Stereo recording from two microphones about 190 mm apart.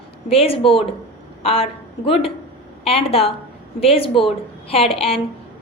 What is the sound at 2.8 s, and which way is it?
A woman's voice, 30° left (ahead or behind).